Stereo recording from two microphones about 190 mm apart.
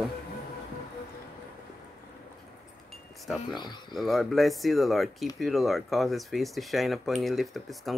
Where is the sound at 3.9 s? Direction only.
Centre (ahead or behind).